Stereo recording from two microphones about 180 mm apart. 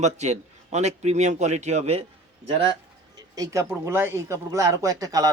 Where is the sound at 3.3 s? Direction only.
20° right (ahead or behind).